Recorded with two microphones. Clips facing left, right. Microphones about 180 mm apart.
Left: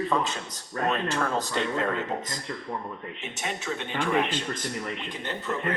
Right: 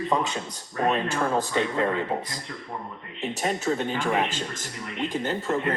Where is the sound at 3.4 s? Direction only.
40° right (ahead or behind).